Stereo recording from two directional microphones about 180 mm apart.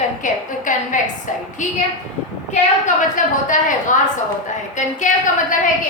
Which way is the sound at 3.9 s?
45° left (ahead or behind).